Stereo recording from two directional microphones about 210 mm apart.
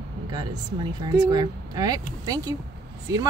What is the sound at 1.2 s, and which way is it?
Speech, 20° right (ahead or behind).